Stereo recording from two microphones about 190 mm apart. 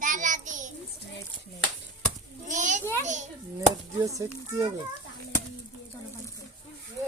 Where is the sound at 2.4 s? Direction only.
40° right (ahead or behind).